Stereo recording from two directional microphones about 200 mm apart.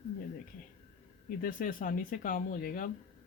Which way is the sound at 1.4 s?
45° left (ahead or behind).